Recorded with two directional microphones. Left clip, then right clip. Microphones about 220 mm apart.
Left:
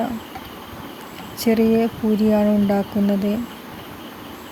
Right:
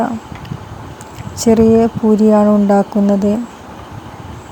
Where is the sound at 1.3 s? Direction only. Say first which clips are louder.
Right 8 dB; 15° right (ahead or behind).